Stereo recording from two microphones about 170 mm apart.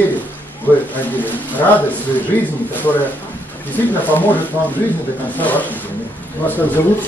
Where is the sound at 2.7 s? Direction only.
10° left (ahead or behind).